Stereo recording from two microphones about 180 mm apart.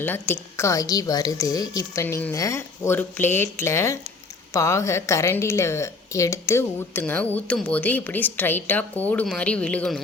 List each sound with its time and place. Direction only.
0.0 s a woman's voice: 10° left (ahead or behind)